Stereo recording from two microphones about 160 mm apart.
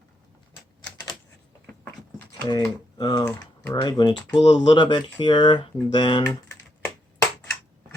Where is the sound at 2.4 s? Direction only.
25° left (ahead or behind).